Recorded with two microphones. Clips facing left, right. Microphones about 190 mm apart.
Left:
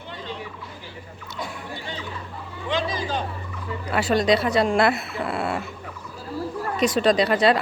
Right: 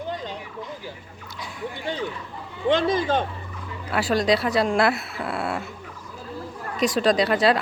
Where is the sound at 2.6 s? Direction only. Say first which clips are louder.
Right 6 dB; 55° right (ahead or behind).